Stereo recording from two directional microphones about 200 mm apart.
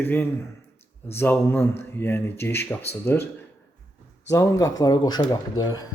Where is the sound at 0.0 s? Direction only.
10° left (ahead or behind).